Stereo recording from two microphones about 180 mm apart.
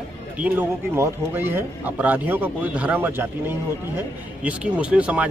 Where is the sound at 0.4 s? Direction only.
10° right (ahead or behind).